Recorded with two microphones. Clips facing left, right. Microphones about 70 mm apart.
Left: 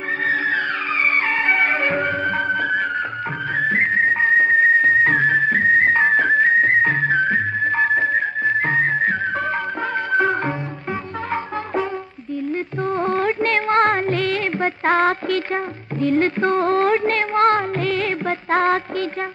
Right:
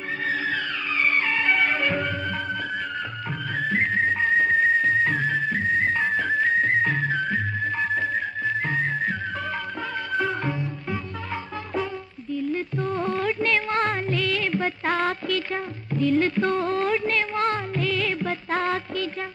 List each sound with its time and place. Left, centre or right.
1.4 s music: left
10.1 s music: left
12.4 s music: left